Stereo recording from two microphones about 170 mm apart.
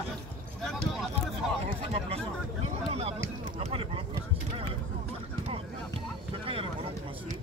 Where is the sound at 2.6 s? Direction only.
35° right (ahead or behind).